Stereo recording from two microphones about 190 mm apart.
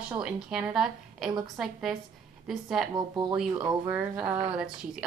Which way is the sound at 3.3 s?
5° right (ahead or behind).